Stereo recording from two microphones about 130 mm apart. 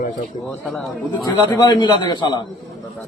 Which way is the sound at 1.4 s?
30° left (ahead or behind).